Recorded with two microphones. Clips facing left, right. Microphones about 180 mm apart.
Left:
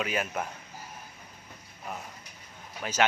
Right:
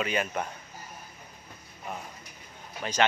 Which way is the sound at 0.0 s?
Centre (ahead or behind).